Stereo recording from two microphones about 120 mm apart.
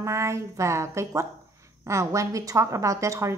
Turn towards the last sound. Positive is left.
turn(degrees=-25)  # may be behind; listen again after turning